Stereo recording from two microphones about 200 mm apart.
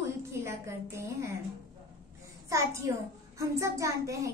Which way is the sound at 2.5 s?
15° right (ahead or behind).